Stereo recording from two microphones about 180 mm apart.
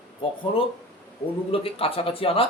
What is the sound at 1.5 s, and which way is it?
Speech, 30° left (ahead or behind).